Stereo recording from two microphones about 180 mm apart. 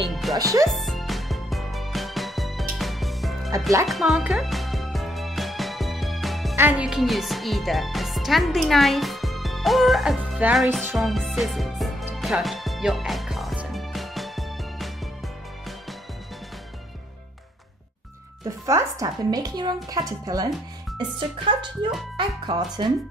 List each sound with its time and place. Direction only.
0.1 s music: centre (ahead or behind)
0.4 s speech: 20° right (ahead or behind)
0.7 s music: centre (ahead or behind)
6.5 s speech: 10° right (ahead or behind)
11.0 s music: centre (ahead or behind)
18.4 s speech: 15° right (ahead or behind)